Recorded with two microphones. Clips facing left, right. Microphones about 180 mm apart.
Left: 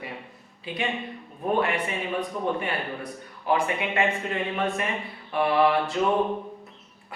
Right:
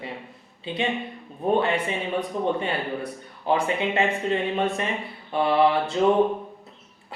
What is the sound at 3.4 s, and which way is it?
Speech, 25° right (ahead or behind).